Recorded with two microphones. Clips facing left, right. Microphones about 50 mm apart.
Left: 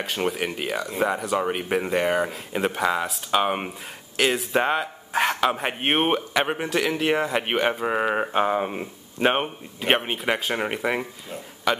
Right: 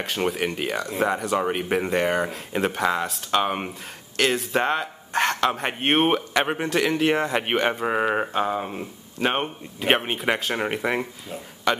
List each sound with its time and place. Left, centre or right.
0.0 s speech: centre
8.3 s speech: centre
9.3 s speech: centre